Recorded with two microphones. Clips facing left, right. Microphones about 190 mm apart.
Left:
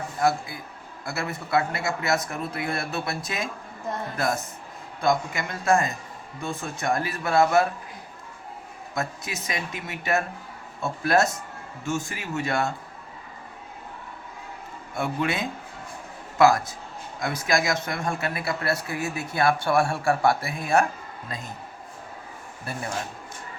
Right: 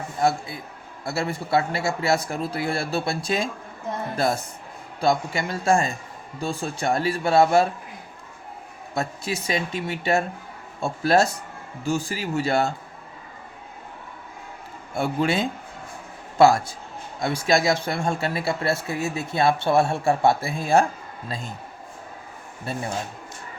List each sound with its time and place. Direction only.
0.2 s speech: 25° right (ahead or behind)
4.9 s speech: 30° right (ahead or behind)
9.0 s speech: 30° right (ahead or behind)
14.9 s speech: 30° right (ahead or behind)
22.6 s speech: 25° right (ahead or behind)